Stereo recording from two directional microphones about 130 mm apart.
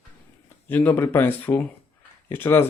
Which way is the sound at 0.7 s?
15° left (ahead or behind).